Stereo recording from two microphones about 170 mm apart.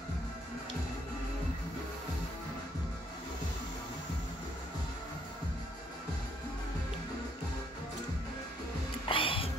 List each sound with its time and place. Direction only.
9.1 s music: 30° left (ahead or behind)